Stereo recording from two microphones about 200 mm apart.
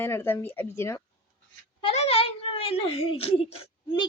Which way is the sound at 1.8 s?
30° left (ahead or behind).